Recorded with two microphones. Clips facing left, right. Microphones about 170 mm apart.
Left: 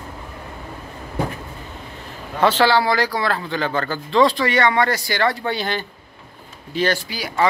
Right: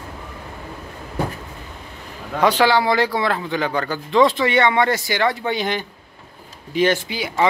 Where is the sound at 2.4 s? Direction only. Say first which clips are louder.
Even; 15° right (ahead or behind).